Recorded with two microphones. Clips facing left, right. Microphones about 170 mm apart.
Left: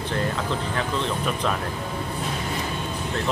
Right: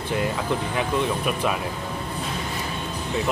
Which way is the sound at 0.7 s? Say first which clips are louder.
Right 2 dB; 15° right (ahead or behind).